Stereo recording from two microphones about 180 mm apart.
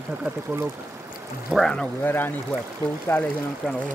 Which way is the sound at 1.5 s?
5° left (ahead or behind).